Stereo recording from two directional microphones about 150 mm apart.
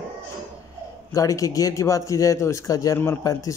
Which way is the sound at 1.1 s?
20° left (ahead or behind).